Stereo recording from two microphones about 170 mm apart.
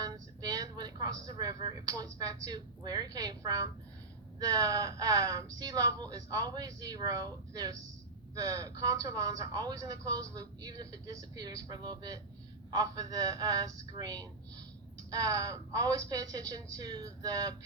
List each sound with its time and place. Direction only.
0.0 s a woman's voice: 20° right (ahead or behind)